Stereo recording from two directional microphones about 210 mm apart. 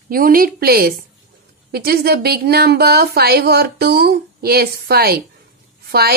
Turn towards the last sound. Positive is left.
turn(degrees=-50)  # may be behind; listen again after turning